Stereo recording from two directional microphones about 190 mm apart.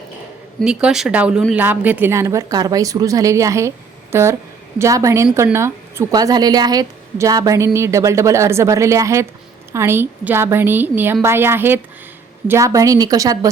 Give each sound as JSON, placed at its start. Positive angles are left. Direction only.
{"t": 0.6, "sound": "a woman's voice", "side_deg": -5}